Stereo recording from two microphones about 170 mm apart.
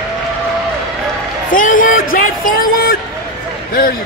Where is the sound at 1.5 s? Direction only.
55° left (ahead or behind).